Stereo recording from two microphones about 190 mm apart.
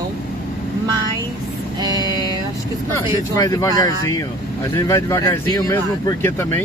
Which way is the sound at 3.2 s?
20° left (ahead or behind).